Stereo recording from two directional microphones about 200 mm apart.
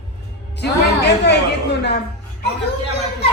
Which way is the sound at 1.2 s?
60° left (ahead or behind).